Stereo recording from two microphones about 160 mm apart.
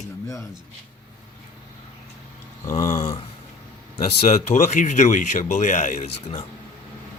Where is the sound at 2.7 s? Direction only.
45° left (ahead or behind).